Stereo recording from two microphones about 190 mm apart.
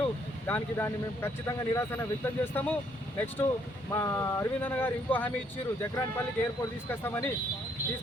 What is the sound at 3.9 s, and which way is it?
Speech, 15° left (ahead or behind).